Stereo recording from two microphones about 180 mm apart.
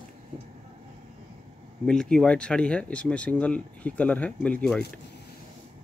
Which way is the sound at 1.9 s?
5° left (ahead or behind).